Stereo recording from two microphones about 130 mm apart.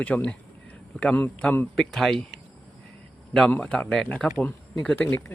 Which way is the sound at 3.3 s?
5° left (ahead or behind).